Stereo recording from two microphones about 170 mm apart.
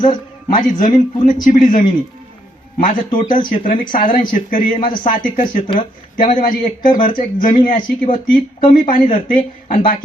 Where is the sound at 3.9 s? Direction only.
55° left (ahead or behind).